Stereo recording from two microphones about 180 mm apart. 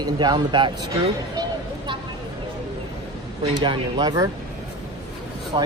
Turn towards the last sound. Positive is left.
turn(degrees=-25)  # may be behind; listen again after turning